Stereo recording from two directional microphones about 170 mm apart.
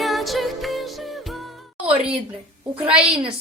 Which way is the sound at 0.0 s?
Centre (ahead or behind).